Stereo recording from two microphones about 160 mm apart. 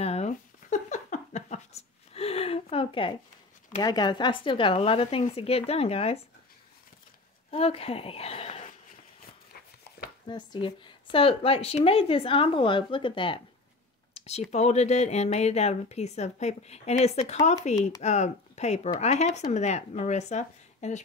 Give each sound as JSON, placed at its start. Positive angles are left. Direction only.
{"t": 0.0, "sound": "a sound", "side_deg": 45}
{"t": 3.8, "sound": "speech", "side_deg": 25}
{"t": 7.5, "sound": "speech", "side_deg": 35}
{"t": 10.2, "sound": "speech", "side_deg": 30}
{"t": 14.1, "sound": "a sound", "side_deg": 40}
{"t": 14.5, "sound": "a woman's voice", "side_deg": 45}